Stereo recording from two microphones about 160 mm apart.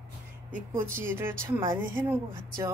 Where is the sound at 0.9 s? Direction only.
15° right (ahead or behind).